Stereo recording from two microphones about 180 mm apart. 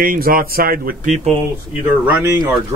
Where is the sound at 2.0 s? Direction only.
10° right (ahead or behind).